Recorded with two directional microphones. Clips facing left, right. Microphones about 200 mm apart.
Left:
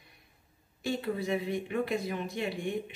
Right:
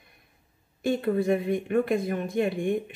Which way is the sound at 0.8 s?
50° right (ahead or behind).